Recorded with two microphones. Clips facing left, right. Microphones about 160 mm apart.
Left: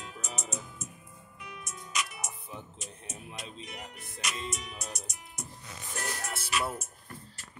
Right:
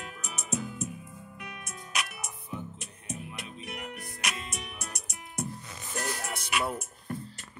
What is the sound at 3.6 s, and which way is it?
Music, 65° right (ahead or behind).